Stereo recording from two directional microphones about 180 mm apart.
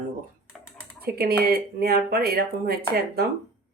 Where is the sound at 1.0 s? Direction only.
60° right (ahead or behind).